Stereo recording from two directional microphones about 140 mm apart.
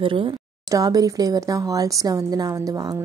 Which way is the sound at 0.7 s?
25° right (ahead or behind).